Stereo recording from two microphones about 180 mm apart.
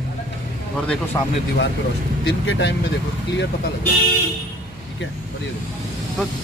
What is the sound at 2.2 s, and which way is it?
Speech, 80° left.